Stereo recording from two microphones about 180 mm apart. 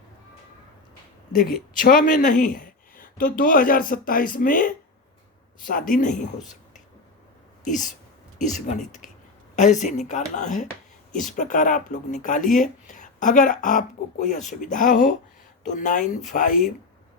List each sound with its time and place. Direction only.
1.8 s speech: 50° left (ahead or behind)
7.6 s speech: 45° left (ahead or behind)